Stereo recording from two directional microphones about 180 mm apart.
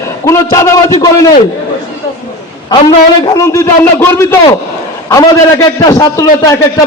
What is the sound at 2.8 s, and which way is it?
A man's voice, 20° left (ahead or behind).